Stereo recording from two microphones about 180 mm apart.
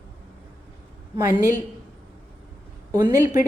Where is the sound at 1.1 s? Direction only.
15° right (ahead or behind).